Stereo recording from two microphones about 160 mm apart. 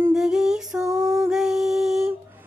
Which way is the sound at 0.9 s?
20° right (ahead or behind).